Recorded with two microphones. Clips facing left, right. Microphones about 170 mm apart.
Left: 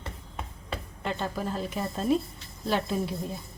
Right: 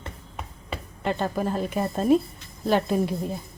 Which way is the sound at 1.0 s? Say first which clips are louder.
Right 6 dB; 55° right (ahead or behind).